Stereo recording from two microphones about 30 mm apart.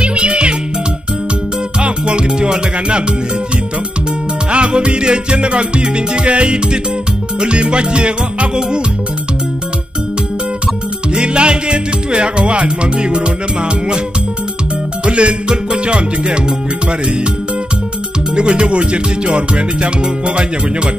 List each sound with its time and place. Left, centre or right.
0.0 s music: right
1.8 s music: right
4.5 s music: right
11.1 s music: right
15.0 s music: right
18.3 s music: right